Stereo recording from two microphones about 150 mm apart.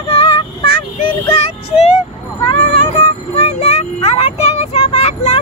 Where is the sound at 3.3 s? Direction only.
45° left (ahead or behind).